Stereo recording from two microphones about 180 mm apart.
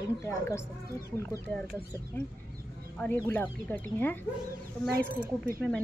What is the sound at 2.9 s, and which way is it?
Speech, 10° left (ahead or behind).